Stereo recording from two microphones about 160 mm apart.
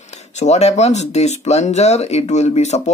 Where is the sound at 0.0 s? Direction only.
45° left (ahead or behind).